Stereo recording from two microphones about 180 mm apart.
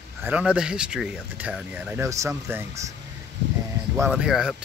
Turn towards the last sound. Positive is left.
turn(degrees=-5)  # may be behind; listen again after turning